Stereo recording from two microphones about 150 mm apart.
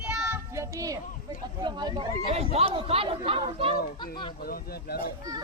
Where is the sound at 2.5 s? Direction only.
40° right (ahead or behind).